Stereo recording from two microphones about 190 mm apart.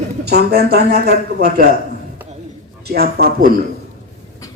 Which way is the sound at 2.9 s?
55° right (ahead or behind).